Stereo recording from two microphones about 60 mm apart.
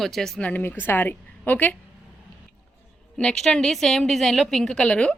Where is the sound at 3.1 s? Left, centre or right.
Centre.